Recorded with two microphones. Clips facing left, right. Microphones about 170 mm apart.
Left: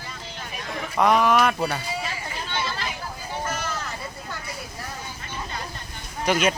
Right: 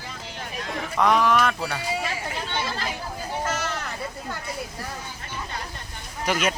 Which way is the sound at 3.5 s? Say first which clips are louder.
Right 1 dB; 75° right (ahead or behind).